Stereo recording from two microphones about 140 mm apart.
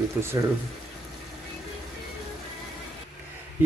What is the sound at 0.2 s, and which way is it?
Speech, 20° right (ahead or behind).